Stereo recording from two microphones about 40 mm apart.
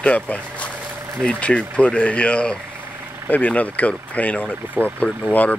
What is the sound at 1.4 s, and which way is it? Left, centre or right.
Speech, left.